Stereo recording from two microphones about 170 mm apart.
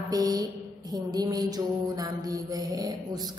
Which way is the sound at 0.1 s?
25° right (ahead or behind).